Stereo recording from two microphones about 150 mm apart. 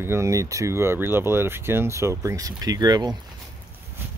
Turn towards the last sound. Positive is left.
turn(degrees=-25)  # may be behind; listen again after turning